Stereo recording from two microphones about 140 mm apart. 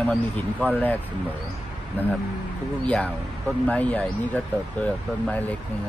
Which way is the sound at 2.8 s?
10° left (ahead or behind).